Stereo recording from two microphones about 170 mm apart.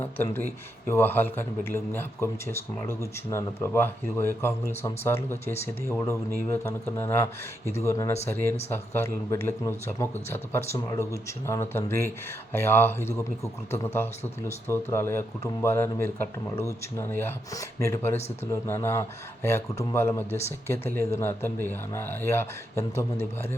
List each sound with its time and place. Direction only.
0.0 s speech: 10° left (ahead or behind)